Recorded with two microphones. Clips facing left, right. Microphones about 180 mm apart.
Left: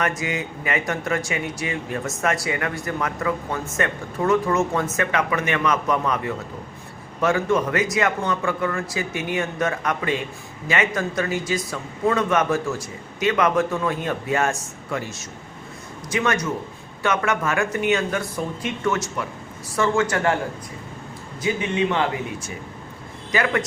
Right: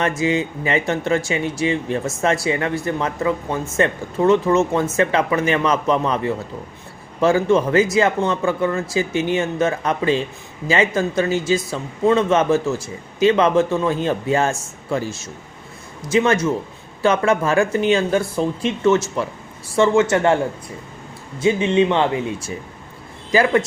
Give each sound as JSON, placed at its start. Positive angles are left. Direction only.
{"t": 0.0, "sound": "speech", "side_deg": -25}
{"t": 21.4, "sound": "speech", "side_deg": -25}